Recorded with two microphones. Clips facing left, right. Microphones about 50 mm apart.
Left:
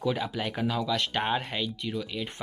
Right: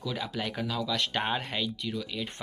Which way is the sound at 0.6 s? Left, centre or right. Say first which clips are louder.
Left 5 dB; left.